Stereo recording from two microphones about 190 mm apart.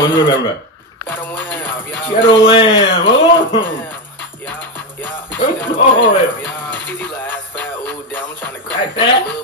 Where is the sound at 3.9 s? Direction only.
10° left (ahead or behind).